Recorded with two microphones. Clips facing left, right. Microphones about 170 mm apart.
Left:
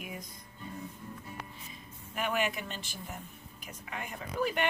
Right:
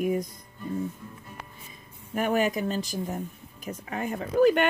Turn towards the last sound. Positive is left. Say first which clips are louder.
# right 11 dB
turn(degrees=-50)  # may be behind; listen again after turning